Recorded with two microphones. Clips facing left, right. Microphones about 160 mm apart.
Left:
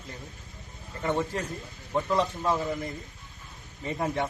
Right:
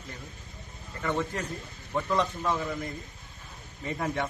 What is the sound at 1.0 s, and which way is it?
Speech, 30° left (ahead or behind).